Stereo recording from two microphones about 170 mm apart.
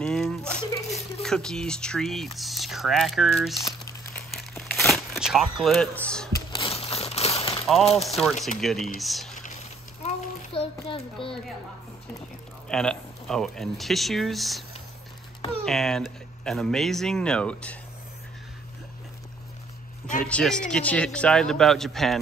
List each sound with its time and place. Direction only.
0.0 s a sound: 5° left (ahead or behind)
1.2 s speech: 5° left (ahead or behind)
4.1 s crumpling: centre (ahead or behind)
6.5 s crumpling: 35° left (ahead or behind)
7.8 s speech: 35° left (ahead or behind)
8.5 s speech: centre (ahead or behind)
10.0 s child singing: 35° left (ahead or behind)
11.2 s speech: 30° left (ahead or behind)
12.6 s speech: 5° left (ahead or behind)
15.6 s speech: centre (ahead or behind)
20.2 s speech: 5° left (ahead or behind)